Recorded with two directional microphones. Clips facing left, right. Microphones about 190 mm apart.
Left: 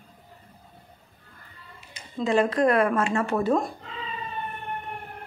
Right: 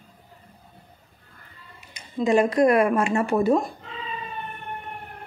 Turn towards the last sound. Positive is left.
turn(degrees=-10)  # may be behind; listen again after turning